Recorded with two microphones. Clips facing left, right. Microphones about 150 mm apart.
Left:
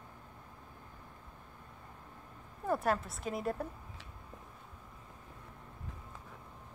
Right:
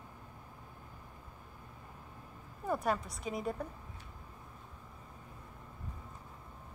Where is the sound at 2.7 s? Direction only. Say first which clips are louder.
Left 1 dB; centre (ahead or behind).